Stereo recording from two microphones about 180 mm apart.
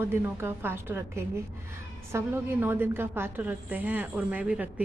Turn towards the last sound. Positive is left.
turn(degrees=-5)  # may be behind; listen again after turning